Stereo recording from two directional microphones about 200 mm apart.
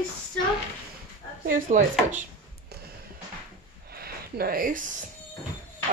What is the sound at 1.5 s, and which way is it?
Speech, 40° right (ahead or behind).